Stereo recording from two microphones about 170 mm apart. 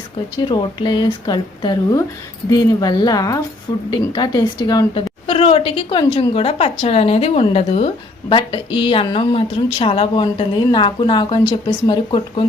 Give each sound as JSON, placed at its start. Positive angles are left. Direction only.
{"t": 0.4, "sound": "a woman's voice", "side_deg": 25}
{"t": 5.2, "sound": "a woman's voice", "side_deg": 35}